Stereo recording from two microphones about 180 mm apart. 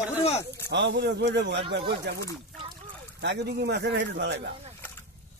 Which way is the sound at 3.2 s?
70° right (ahead or behind).